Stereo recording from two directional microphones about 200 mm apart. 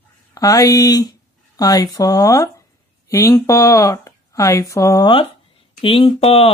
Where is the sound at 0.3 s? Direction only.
15° left (ahead or behind).